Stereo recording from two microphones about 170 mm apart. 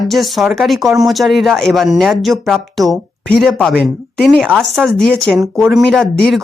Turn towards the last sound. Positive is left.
turn(degrees=0)  # may be behind; listen again after turning